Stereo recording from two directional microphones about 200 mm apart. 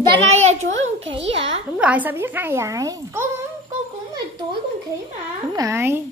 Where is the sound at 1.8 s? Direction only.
5° right (ahead or behind).